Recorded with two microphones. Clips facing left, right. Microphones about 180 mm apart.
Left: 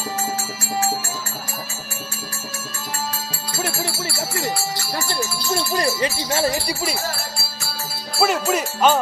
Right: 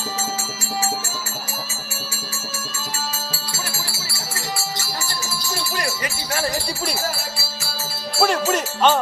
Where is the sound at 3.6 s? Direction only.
60° left (ahead or behind).